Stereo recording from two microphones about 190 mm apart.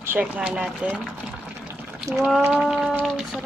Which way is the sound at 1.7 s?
10° right (ahead or behind).